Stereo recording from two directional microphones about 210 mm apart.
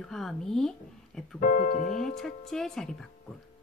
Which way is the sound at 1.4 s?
40° left (ahead or behind).